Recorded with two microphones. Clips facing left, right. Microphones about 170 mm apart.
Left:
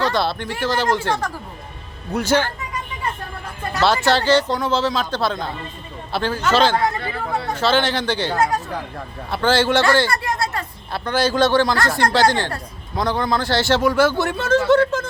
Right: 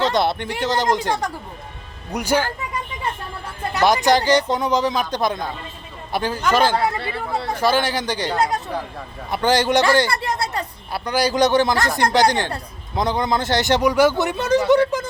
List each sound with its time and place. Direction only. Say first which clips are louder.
0.0 s a man's voice: right 1 dB; 20° right (ahead or behind)
3.8 s a man's voice: right 1 dB; 15° right (ahead or behind)